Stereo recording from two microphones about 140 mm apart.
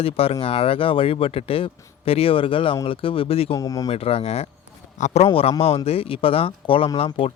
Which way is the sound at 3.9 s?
45° left (ahead or behind).